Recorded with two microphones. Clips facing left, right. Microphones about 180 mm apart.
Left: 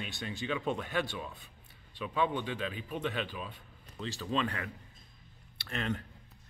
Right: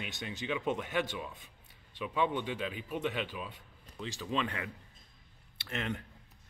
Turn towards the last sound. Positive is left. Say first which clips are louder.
# left 2 dB
turn(degrees=-20)  # may be behind; listen again after turning